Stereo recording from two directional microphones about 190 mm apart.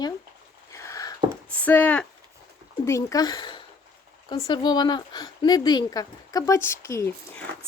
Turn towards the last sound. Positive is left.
turn(degrees=15)  # may be behind; listen again after turning